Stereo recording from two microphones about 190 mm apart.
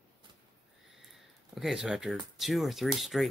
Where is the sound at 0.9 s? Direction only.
Centre (ahead or behind).